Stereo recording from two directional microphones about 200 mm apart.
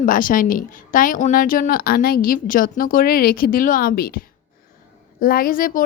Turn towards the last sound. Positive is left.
turn(degrees=45)  # may be behind; listen again after turning